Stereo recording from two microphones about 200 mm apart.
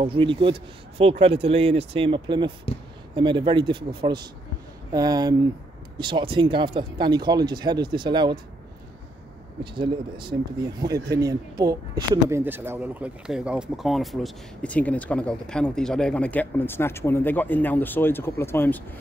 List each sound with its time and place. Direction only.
0.0 s speech: 25° right (ahead or behind)
9.6 s speech: 25° right (ahead or behind); by 18.8 s 10° left (ahead or behind)